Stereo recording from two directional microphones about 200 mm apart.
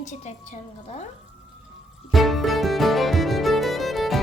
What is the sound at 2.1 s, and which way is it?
Music, centre (ahead or behind).